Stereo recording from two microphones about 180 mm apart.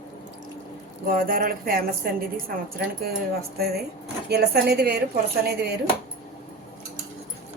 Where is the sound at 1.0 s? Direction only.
50° right (ahead or behind).